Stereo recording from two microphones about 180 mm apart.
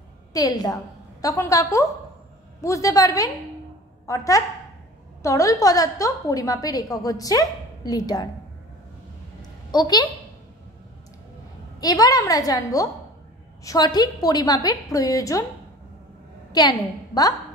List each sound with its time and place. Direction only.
0.3 s a woman's voice: 20° left (ahead or behind)
9.4 s a sound: 20° left (ahead or behind)
11.8 s a woman's voice: 20° left (ahead or behind)
17.1 s a woman's voice: 20° left (ahead or behind)